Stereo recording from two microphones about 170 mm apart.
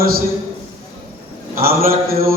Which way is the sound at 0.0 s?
60° right (ahead or behind).